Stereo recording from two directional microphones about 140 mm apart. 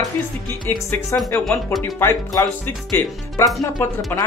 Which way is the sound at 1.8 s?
15° left (ahead or behind).